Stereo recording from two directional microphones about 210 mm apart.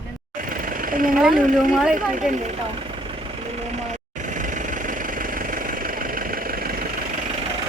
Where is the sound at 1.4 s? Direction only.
40° right (ahead or behind).